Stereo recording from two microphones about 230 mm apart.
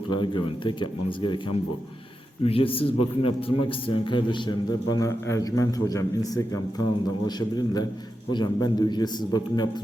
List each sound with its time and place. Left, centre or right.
0.1 s a man's voice: left
2.4 s a man's voice: left